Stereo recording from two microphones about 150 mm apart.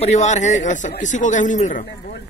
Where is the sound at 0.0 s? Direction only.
50° left (ahead or behind).